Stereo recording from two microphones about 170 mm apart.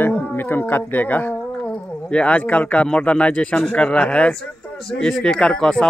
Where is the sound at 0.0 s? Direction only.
10° left (ahead or behind).